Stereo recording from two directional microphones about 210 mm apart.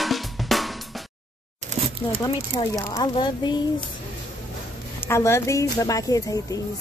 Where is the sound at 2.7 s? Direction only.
15° left (ahead or behind).